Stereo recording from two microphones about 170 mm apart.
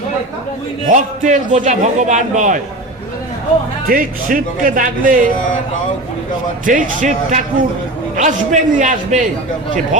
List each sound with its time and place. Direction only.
0.9 s a man's voice: 50° right (ahead or behind)
3.8 s speech: 55° right (ahead or behind)
6.7 s a man's voice: 50° right (ahead or behind)